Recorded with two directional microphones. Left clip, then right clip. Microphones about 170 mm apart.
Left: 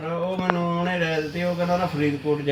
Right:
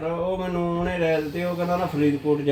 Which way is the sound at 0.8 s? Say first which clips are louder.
Right 1 dB; 25° right (ahead or behind).